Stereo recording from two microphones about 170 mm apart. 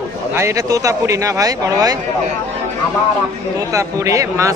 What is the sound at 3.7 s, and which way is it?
Speech, 20° right (ahead or behind).